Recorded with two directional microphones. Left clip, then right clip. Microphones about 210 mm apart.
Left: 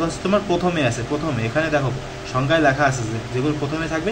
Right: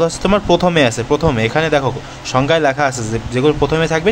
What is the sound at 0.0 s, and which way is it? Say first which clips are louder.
Speech: right 6 dB; 50° right (ahead or behind).